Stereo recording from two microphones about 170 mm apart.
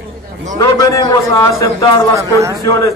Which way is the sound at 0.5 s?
20° left (ahead or behind).